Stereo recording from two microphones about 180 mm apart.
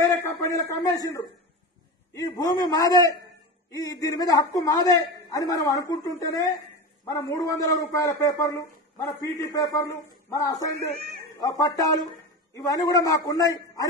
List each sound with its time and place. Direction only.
0.0 s a man's voice: 15° left (ahead or behind)